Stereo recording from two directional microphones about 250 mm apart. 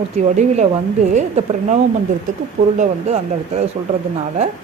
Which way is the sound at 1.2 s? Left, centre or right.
Right.